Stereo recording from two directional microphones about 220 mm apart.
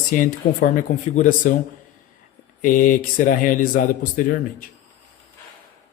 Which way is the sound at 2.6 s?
35° left (ahead or behind).